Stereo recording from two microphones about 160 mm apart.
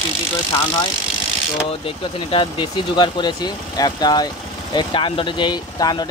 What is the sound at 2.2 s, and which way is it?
Speech, 30° left (ahead or behind).